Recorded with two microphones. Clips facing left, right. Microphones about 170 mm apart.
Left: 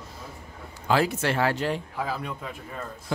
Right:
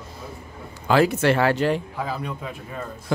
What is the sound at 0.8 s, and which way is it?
Speech, 70° right (ahead or behind).